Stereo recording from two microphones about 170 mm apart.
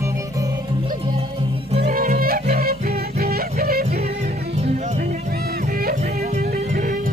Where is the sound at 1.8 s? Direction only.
55° right (ahead or behind).